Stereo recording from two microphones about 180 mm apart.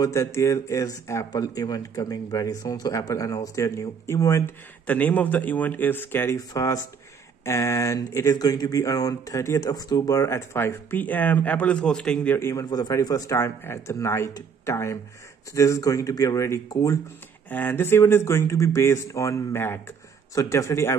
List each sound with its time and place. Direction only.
0.0 s speech: 15° left (ahead or behind)